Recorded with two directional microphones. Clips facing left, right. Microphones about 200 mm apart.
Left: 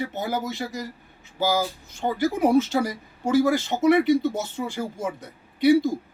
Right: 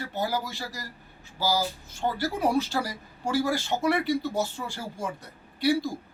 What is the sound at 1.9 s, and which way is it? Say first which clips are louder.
Speech: left 6 dB; 20° left (ahead or behind).